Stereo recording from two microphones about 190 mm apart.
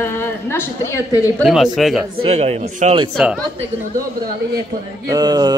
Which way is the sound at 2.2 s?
35° right (ahead or behind).